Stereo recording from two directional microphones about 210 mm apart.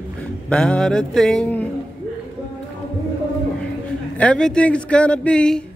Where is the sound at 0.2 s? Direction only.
5° left (ahead or behind).